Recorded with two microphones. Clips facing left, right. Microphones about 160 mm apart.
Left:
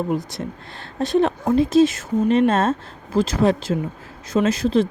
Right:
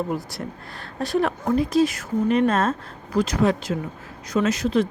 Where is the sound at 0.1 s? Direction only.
20° left (ahead or behind).